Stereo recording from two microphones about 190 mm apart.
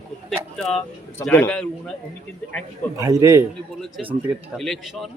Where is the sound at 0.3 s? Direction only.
Centre (ahead or behind).